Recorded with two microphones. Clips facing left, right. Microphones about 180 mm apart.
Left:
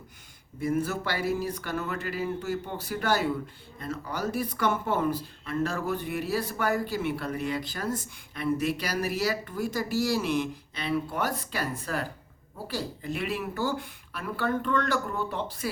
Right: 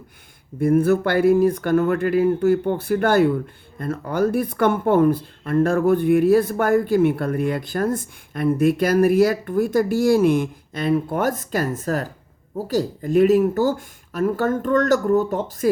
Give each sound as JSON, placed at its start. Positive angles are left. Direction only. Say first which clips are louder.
{"t": 0.6, "sound": "speech", "louder": "right 11 dB", "side_deg": -55}